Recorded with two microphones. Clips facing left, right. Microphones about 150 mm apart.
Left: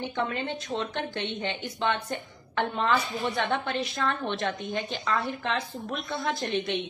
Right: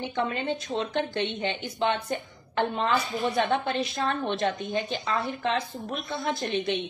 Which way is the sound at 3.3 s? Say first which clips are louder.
Right 3 dB; 20° right (ahead or behind).